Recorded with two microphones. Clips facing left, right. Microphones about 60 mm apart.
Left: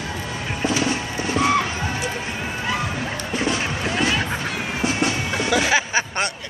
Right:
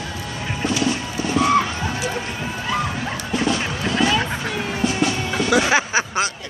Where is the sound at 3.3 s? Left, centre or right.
Centre.